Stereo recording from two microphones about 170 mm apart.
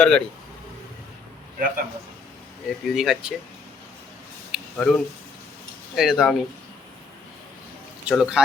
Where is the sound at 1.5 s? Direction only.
55° right (ahead or behind).